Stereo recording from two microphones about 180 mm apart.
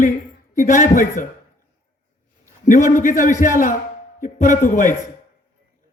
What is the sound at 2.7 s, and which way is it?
A man's voice, 45° left (ahead or behind).